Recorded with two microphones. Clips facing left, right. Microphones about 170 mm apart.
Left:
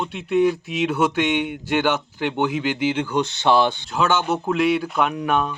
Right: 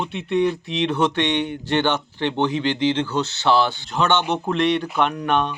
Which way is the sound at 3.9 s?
Centre (ahead or behind).